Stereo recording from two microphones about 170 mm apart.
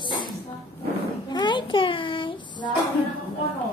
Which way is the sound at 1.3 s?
25° left (ahead or behind).